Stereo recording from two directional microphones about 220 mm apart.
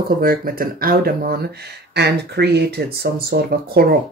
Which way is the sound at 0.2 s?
40° right (ahead or behind).